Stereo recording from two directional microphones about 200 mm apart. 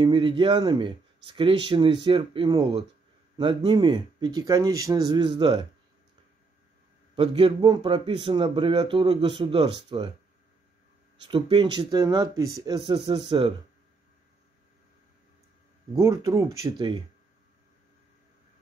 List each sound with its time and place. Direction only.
0.0 s speech: 25° right (ahead or behind)
7.2 s speech: 25° right (ahead or behind)
11.2 s speech: 25° right (ahead or behind)
15.9 s speech: 15° right (ahead or behind)